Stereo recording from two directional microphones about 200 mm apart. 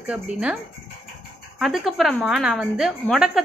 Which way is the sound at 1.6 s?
Centre (ahead or behind).